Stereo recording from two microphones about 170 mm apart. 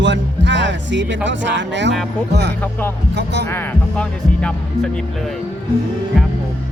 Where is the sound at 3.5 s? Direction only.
5° left (ahead or behind).